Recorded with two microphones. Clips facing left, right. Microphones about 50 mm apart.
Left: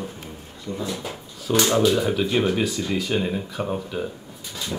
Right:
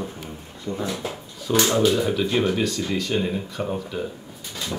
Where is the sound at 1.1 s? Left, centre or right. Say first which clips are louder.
Left 1 dB; centre.